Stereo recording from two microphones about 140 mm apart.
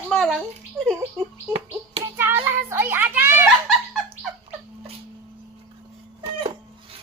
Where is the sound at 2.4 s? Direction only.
15° right (ahead or behind).